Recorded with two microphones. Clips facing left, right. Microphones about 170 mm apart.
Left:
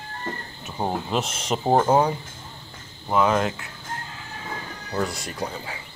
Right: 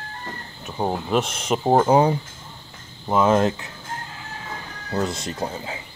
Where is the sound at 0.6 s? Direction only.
Centre (ahead or behind).